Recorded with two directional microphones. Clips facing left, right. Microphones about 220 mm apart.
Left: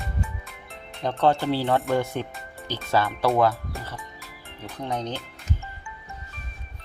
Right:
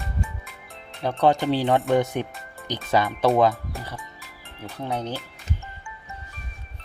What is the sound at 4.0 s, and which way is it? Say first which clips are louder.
Music: left 1 dB; centre (ahead or behind).